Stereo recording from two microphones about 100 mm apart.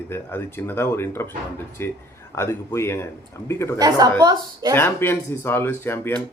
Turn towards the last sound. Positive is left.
turn(degrees=25)  # may be behind; listen again after turning